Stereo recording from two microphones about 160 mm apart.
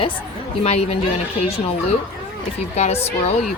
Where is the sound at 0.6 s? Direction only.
40° left (ahead or behind).